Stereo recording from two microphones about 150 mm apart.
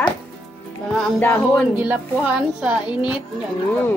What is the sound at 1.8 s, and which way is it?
Speech, 10° right (ahead or behind).